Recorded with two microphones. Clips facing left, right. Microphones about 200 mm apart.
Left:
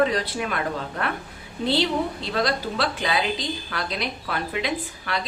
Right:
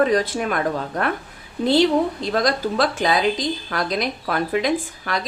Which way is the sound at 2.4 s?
45° right (ahead or behind).